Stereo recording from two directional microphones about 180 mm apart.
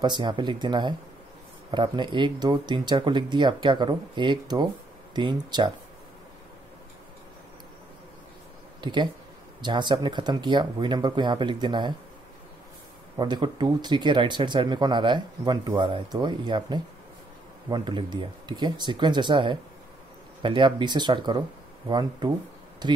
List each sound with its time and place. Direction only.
0.0 s speech: 25° right (ahead or behind)
8.8 s speech: 25° right (ahead or behind)
13.2 s speech: 25° right (ahead or behind)